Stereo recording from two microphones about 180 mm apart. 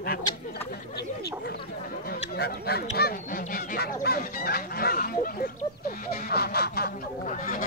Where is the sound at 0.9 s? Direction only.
65° left (ahead or behind).